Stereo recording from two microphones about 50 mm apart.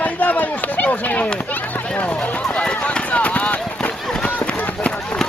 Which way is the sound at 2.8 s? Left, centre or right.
Left.